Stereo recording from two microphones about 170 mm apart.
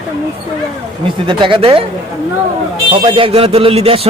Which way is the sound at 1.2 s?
30° right (ahead or behind).